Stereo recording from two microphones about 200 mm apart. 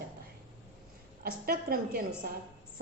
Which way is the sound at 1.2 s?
45° right (ahead or behind).